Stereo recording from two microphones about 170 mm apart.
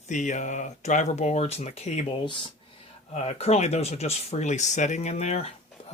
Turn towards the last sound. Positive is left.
turn(degrees=40)  # may be behind; listen again after turning